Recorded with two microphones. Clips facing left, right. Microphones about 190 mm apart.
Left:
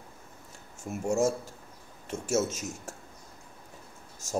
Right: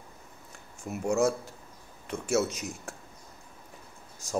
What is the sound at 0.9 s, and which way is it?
Speech, 45° left (ahead or behind).